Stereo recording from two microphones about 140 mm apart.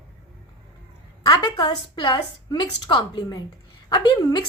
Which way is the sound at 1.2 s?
30° left (ahead or behind).